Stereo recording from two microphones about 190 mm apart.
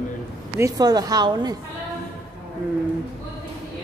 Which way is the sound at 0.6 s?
20° right (ahead or behind).